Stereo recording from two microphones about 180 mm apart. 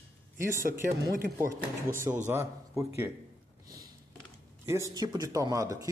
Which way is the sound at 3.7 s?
20° right (ahead or behind).